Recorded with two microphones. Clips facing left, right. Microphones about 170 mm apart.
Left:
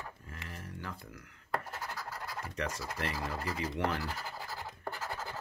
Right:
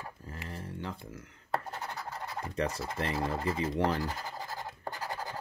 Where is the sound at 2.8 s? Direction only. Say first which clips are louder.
Right 5 dB; 25° right (ahead or behind).